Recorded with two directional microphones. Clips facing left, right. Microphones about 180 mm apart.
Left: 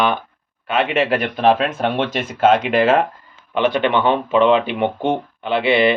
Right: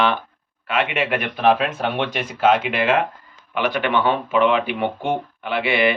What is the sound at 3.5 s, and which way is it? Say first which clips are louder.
Speech: left 4 dB; 25° left (ahead or behind).